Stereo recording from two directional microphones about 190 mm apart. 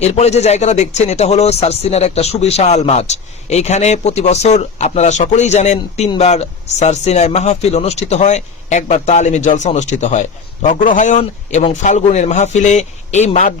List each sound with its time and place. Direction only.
0.0 s speech: 35° left (ahead or behind)